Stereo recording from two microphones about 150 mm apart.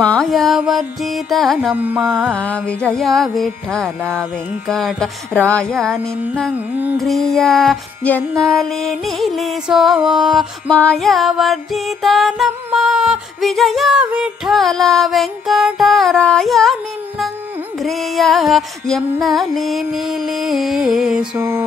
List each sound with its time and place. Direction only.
0.0 s music: 5° left (ahead or behind)
17.7 s music: centre (ahead or behind)
21.4 s a sound: 15° right (ahead or behind)